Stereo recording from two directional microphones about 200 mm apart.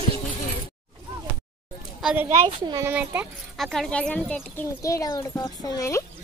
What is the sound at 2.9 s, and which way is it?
Speech, 10° right (ahead or behind).